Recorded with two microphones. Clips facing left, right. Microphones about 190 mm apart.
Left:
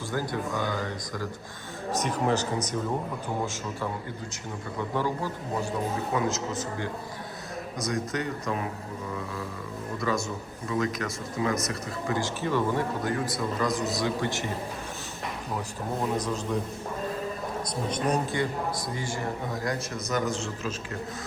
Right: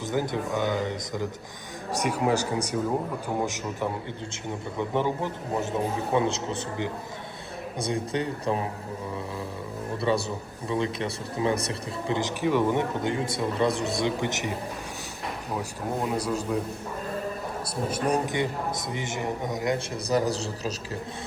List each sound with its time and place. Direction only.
0.1 s speech: 20° right (ahead or behind)
7.8 s speech: 30° right (ahead or behind)
10.0 s speech: 30° right (ahead or behind)
12.0 s speech: 20° right (ahead or behind)
16.1 s speech: 10° right (ahead or behind)
17.8 s speech: 10° right (ahead or behind)
20.1 s speech: 35° right (ahead or behind)